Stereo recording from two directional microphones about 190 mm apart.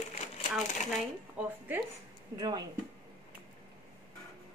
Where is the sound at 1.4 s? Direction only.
10° right (ahead or behind).